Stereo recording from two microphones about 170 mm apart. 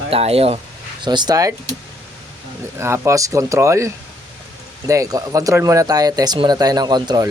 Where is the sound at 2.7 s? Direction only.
15° right (ahead or behind).